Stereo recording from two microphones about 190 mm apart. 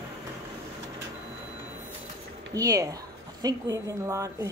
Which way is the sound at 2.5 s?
20° right (ahead or behind).